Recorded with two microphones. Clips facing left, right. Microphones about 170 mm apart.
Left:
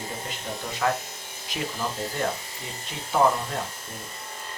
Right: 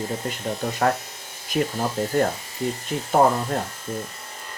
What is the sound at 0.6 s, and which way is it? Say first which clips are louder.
Speech: right 4 dB; 60° right (ahead or behind).